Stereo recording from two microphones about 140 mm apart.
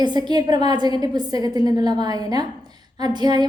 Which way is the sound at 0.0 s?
30° right (ahead or behind).